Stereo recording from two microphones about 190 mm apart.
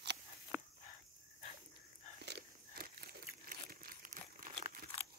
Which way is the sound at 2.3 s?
60° right (ahead or behind).